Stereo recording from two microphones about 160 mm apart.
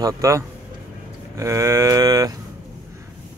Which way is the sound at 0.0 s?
20° right (ahead or behind).